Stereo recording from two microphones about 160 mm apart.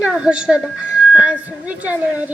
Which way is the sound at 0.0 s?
5° right (ahead or behind).